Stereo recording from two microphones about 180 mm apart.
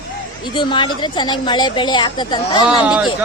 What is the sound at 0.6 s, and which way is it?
A woman's voice, 25° left (ahead or behind).